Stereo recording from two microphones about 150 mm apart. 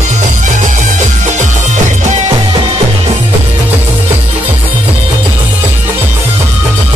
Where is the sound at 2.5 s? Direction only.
40° right (ahead or behind).